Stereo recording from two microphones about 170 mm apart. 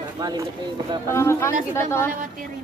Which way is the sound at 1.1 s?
15° left (ahead or behind).